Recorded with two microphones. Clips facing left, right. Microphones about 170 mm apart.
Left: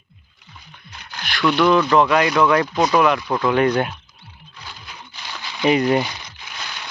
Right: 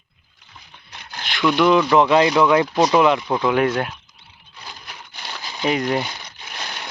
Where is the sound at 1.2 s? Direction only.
20° right (ahead or behind).